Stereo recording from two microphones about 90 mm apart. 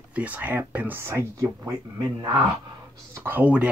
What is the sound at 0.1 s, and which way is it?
Speech, 15° right (ahead or behind).